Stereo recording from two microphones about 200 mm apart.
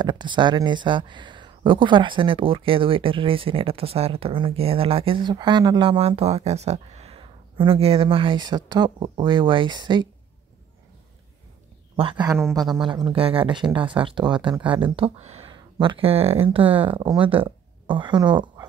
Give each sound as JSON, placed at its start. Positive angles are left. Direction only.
{"t": 0.0, "sound": "speech", "side_deg": -20}
{"t": 12.0, "sound": "speech", "side_deg": -25}